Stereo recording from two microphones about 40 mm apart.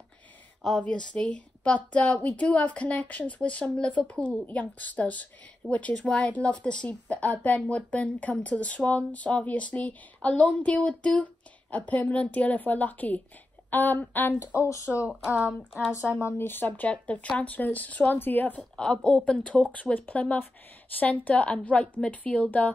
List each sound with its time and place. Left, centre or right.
0.6 s speech: centre
0.8 s a woman's voice: left
6.0 s a woman's voice: left
11.7 s speech: left
13.7 s a woman's voice: left
14.5 s speech: right
15.2 s speech: right
16.3 s a woman's voice: left
16.9 s a woman's voice: left
18.8 s a woman's voice: left